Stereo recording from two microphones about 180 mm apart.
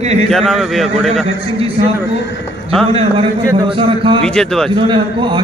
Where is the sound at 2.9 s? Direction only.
30° right (ahead or behind).